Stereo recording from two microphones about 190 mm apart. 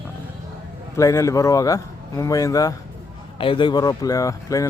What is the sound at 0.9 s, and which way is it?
Speech, 15° left (ahead or behind).